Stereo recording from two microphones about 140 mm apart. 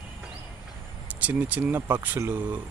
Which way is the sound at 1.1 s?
10° right (ahead or behind).